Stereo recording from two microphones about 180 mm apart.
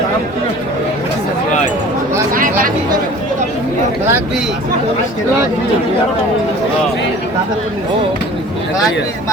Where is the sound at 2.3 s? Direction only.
50° right (ahead or behind).